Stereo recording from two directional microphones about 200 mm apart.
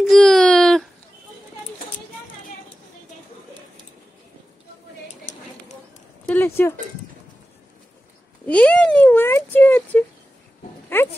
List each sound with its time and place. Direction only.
0.0 s wail: 5° left (ahead or behind)
6.2 s a sound: 10° left (ahead or behind)
8.5 s speech: 5° left (ahead or behind)